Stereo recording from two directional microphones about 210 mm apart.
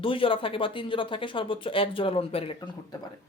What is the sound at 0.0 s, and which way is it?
A man's voice, 25° left (ahead or behind).